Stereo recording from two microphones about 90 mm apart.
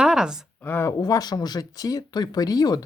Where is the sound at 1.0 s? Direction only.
50° left (ahead or behind).